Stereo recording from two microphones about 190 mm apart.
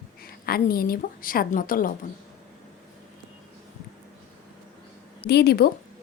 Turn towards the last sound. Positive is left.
turn(degrees=60)  # may be behind; listen again after turning